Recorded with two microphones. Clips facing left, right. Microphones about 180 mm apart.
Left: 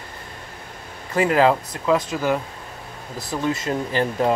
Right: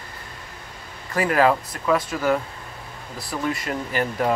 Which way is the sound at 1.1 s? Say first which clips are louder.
Left 2 dB; 20° left (ahead or behind).